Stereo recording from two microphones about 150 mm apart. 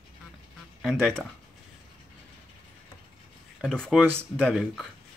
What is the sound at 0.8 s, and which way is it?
Speech, centre (ahead or behind).